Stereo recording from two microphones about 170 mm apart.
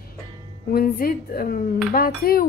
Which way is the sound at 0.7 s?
60° left (ahead or behind).